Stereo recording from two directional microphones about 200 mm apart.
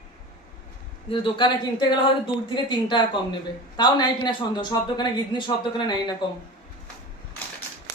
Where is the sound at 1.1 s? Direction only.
25° left (ahead or behind).